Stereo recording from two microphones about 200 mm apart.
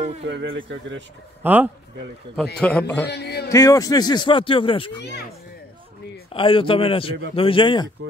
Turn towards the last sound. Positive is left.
turn(degrees=25)  # may be behind; listen again after turning